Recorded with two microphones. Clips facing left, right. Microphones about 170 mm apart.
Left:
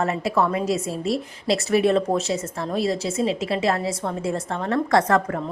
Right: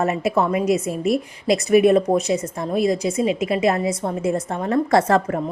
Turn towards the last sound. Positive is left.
turn(degrees=-25)  # may be behind; listen again after turning